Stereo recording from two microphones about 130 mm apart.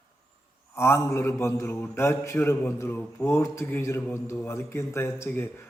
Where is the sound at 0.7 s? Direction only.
20° left (ahead or behind).